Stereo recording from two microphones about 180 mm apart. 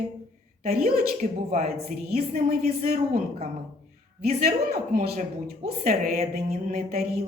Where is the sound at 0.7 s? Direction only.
55° right (ahead or behind).